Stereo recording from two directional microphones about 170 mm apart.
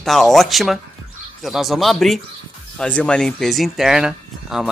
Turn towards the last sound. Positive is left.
turn(degrees=-5)  # may be behind; listen again after turning